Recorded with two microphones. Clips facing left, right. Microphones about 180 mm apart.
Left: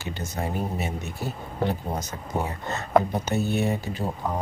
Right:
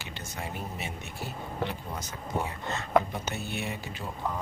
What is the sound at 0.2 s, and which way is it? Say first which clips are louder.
Speech: left 8 dB; 40° left (ahead or behind).